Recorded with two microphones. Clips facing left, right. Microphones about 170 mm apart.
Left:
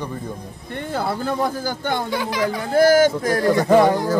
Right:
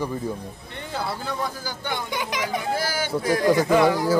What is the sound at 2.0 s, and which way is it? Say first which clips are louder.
Speech: left 6 dB; 20° right (ahead or behind).